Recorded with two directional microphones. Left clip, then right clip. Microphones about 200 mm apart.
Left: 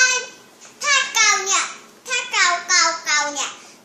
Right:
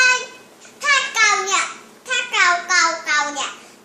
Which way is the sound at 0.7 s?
5° right (ahead or behind).